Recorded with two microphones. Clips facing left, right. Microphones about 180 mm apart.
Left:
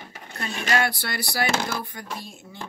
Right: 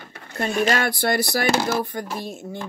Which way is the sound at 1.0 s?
50° right (ahead or behind).